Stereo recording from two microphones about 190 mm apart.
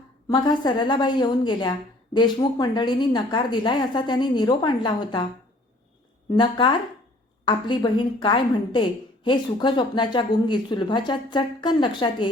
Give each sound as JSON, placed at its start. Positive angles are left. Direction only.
{"t": 0.3, "sound": "a woman's voice", "side_deg": 25}
{"t": 6.3, "sound": "a woman's voice", "side_deg": 25}